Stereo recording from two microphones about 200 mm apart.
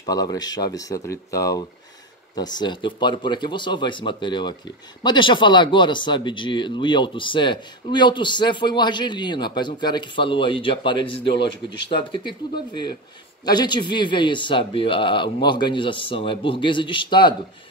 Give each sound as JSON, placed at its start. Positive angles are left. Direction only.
{"t": 0.0, "sound": "speech", "side_deg": 20}